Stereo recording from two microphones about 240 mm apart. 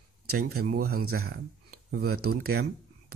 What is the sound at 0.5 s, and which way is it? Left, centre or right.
Speech, right.